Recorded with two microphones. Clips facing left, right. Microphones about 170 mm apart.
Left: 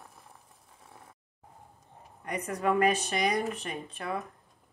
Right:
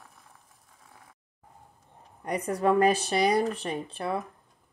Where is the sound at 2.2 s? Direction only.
35° right (ahead or behind).